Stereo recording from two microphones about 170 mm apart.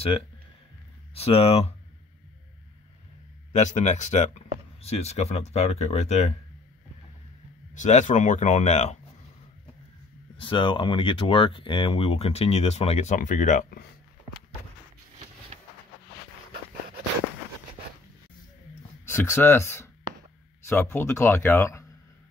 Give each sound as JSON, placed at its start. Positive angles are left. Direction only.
{"t": 1.1, "sound": "speech", "side_deg": 35}
{"t": 3.5, "sound": "speech", "side_deg": 40}
{"t": 7.7, "sound": "speech", "side_deg": 45}
{"t": 10.4, "sound": "speech", "side_deg": 30}
{"t": 15.5, "sound": "a sound", "side_deg": -40}
{"t": 19.0, "sound": "speech", "side_deg": 15}